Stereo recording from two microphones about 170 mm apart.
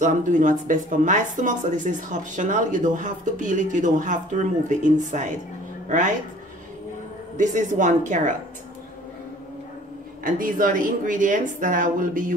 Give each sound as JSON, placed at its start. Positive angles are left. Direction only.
{"t": 0.0, "sound": "a woman's voice", "side_deg": -50}
{"t": 7.3, "sound": "speech", "side_deg": -45}
{"t": 10.2, "sound": "speech", "side_deg": -55}